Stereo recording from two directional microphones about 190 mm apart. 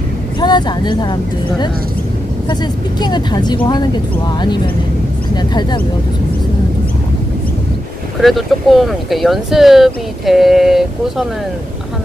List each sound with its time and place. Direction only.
0.4 s speech: 25° left (ahead or behind)
3.0 s speech: 20° left (ahead or behind)
8.2 s speech: centre (ahead or behind)